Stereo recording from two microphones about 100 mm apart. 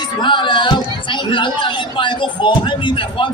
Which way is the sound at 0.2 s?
50° left (ahead or behind).